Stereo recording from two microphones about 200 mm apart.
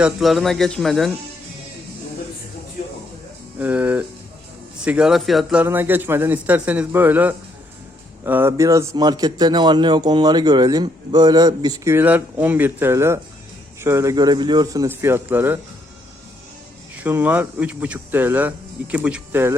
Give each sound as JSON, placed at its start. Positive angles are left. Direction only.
{"t": 0.0, "sound": "speech", "side_deg": 0}
{"t": 3.6, "sound": "speech", "side_deg": -10}
{"t": 16.9, "sound": "speech", "side_deg": -10}